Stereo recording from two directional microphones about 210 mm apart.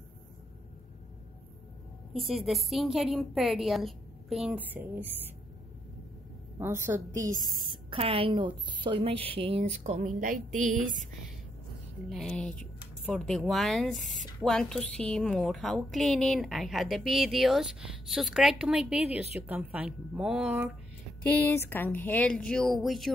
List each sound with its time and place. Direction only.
2.1 s speech: centre (ahead or behind)
6.6 s a woman's voice: 10° right (ahead or behind)
7.2 s a woman's voice: 40° right (ahead or behind)
7.9 s a woman's voice: 25° right (ahead or behind)
12.1 s a woman's voice: centre (ahead or behind)
21.3 s speech: 10° left (ahead or behind)